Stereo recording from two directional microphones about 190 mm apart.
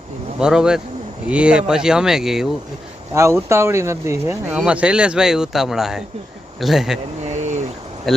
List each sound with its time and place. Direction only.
0.3 s speech: 5° right (ahead or behind)
3.2 s speech: 15° right (ahead or behind)
7.3 s a sound: 40° right (ahead or behind)
8.1 s speech: centre (ahead or behind)